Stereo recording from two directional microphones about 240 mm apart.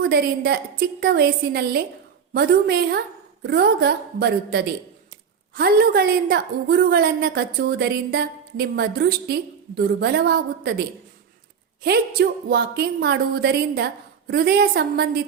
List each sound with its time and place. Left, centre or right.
0.0 s a woman's voice: right
12.5 s a woman's voice: right